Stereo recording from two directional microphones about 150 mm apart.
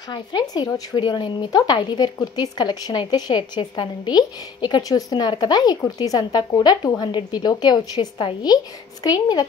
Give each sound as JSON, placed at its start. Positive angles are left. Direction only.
{"t": 0.1, "sound": "speech", "side_deg": 30}